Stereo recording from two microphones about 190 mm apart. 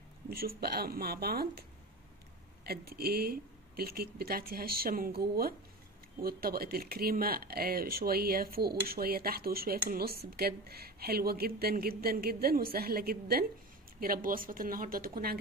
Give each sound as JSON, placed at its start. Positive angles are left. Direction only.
{"t": 0.3, "sound": "speech", "side_deg": -50}